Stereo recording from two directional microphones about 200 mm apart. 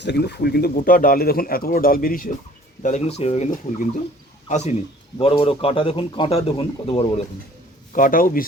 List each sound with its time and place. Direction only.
0.0 s speech: 55° left (ahead or behind); by 7.1 s 25° left (ahead or behind)
7.9 s speech: 45° left (ahead or behind)